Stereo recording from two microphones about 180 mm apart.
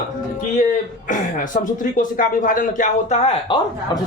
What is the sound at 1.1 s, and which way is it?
Speech, 45° left (ahead or behind).